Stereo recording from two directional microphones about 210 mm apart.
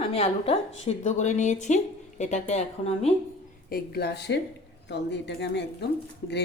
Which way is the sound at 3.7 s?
45° left (ahead or behind).